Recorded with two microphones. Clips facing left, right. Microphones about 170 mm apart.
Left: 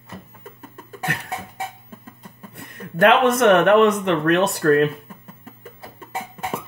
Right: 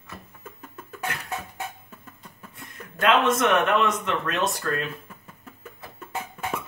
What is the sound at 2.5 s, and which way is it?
Speech, 65° left (ahead or behind).